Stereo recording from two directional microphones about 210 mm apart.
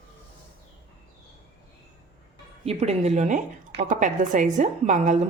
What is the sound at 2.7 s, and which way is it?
A woman's voice, 30° right (ahead or behind).